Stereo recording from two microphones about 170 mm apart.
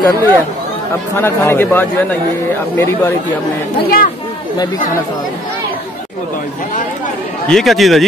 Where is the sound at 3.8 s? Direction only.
60° left (ahead or behind).